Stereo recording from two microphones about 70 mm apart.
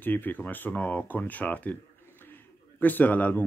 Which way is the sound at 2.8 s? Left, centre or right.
Left.